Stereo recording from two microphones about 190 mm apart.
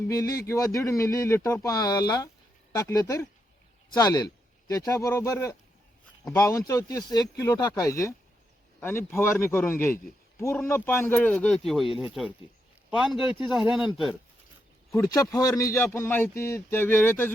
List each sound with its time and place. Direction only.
0.2 s a man's voice: 15° left (ahead or behind); by 14.2 s centre (ahead or behind)
14.9 s speech: 15° left (ahead or behind)